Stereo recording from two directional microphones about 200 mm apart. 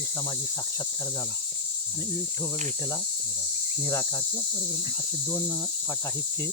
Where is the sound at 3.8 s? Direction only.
10° left (ahead or behind).